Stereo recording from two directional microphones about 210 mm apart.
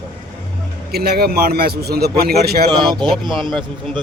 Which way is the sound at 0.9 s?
45° right (ahead or behind).